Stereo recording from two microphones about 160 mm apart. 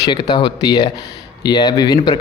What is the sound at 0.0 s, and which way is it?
Speech, 25° left (ahead or behind).